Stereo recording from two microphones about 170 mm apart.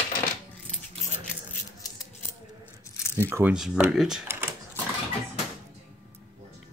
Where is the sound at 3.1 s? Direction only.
15° right (ahead or behind).